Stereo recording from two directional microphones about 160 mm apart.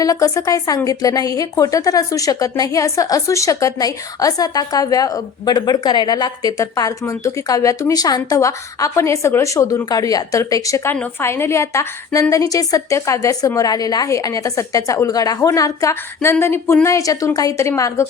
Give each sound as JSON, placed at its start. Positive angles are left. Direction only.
{"t": 0.0, "sound": "speech", "side_deg": 20}